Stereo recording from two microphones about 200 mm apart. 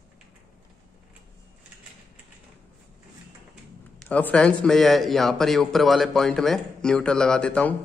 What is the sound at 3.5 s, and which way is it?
Speech, 5° left (ahead or behind).